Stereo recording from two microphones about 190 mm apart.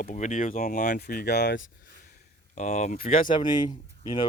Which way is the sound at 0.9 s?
55° left (ahead or behind).